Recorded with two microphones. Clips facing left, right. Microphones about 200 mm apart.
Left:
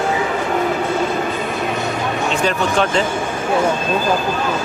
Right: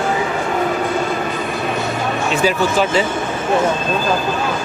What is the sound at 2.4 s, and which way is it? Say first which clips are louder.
Speech: right 2 dB; 5° right (ahead or behind).